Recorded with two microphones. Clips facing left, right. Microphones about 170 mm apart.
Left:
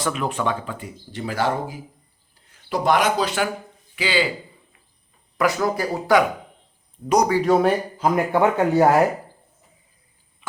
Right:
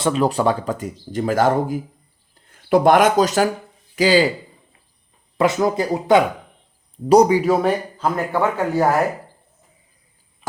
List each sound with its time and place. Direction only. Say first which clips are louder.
0.0 s speech: right 6 dB; 35° right (ahead or behind)
5.4 s speech: right 3 dB; 25° right (ahead or behind)
7.4 s a man's voice: even; centre (ahead or behind)
7.9 s a man's voice: left 2 dB; 15° left (ahead or behind)